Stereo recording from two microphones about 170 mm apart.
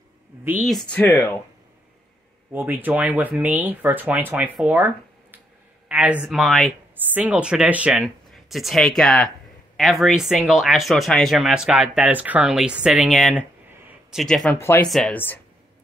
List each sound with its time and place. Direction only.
0.7 s speech: 5° left (ahead or behind)
2.5 s speech: 10° right (ahead or behind)
14.6 s speech: 15° left (ahead or behind)
14.9 s speech: centre (ahead or behind)